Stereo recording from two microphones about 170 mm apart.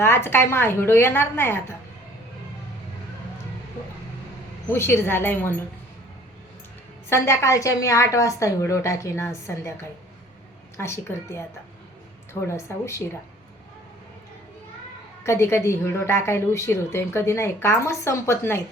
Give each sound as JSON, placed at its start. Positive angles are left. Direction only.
{"t": 0.0, "sound": "a woman's voice", "side_deg": 15}
{"t": 4.7, "sound": "a woman's voice", "side_deg": 15}
{"t": 7.1, "sound": "a woman's voice", "side_deg": 15}
{"t": 10.8, "sound": "a woman's voice", "side_deg": 15}
{"t": 15.2, "sound": "a woman's voice", "side_deg": 15}